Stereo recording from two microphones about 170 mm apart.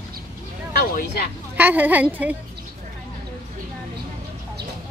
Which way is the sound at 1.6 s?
10° right (ahead or behind).